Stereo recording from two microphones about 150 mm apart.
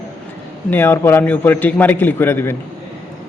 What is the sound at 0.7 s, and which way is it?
A man's voice, 15° left (ahead or behind).